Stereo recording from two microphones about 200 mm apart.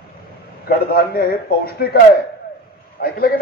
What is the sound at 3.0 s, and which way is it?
Speech, 45° left (ahead or behind).